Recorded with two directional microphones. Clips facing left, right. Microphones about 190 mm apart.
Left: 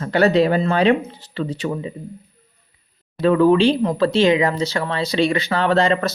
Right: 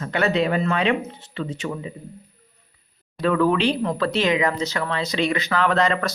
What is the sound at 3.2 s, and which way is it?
Speech, 25° left (ahead or behind).